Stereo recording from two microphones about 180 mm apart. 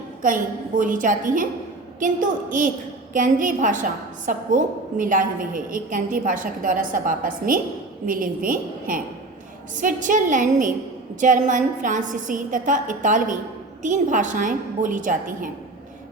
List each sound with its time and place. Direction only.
0.2 s a woman's voice: 50° right (ahead or behind)